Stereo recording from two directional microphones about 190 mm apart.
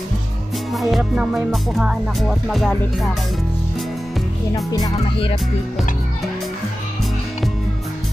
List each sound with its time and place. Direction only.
0.7 s music: 5° right (ahead or behind)
4.6 s speech: 20° left (ahead or behind)